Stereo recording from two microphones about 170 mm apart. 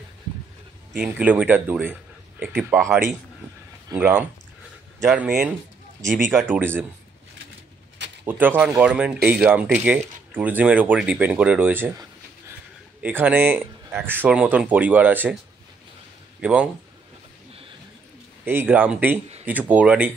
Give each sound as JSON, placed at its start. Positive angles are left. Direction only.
{"t": 0.9, "sound": "speech", "side_deg": -10}
{"t": 3.9, "sound": "speech", "side_deg": -10}
{"t": 6.5, "sound": "speech", "side_deg": -10}
{"t": 8.3, "sound": "speech", "side_deg": -10}
{"t": 16.3, "sound": "a man's voice", "side_deg": -5}
{"t": 18.4, "sound": "speech", "side_deg": -10}